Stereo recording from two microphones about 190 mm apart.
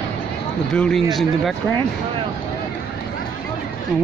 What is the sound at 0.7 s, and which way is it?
Speech, 5° left (ahead or behind).